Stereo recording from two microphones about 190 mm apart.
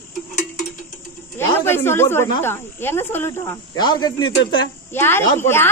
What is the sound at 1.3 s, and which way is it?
A woman's voice, 10° left (ahead or behind).